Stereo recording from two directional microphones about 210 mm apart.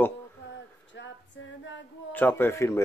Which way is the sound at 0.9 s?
60° left (ahead or behind).